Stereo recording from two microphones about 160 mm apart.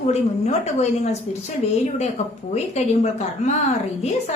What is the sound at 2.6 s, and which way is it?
Speech, 45° left (ahead or behind).